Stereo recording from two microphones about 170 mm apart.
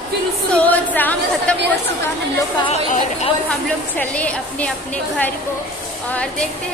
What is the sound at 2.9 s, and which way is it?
Speech, 40° left (ahead or behind).